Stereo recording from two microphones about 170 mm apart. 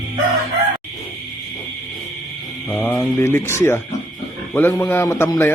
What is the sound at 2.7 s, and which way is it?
A man's voice, 10° left (ahead or behind).